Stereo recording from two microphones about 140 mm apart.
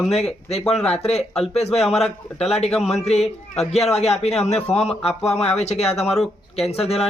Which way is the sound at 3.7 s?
50° left (ahead or behind).